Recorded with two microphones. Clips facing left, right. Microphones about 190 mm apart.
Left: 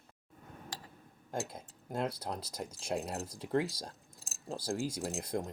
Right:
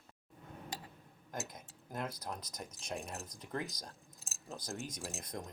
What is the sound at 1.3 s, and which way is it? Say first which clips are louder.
Speech: left 6 dB; 30° left (ahead or behind).